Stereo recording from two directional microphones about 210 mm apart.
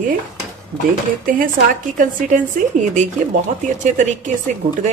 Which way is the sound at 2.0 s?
35° right (ahead or behind).